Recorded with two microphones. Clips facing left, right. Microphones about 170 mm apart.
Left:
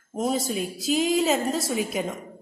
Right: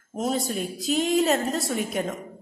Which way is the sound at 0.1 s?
Centre (ahead or behind).